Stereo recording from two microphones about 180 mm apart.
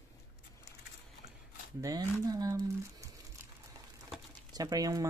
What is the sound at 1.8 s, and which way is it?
Speech, 20° right (ahead or behind).